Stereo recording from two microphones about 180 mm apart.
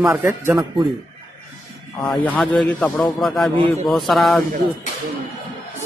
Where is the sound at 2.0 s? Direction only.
5° left (ahead or behind).